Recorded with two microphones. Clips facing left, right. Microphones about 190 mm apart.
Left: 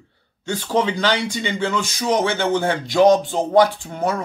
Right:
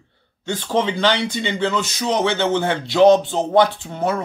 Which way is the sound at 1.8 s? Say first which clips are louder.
Even; 45° left (ahead or behind).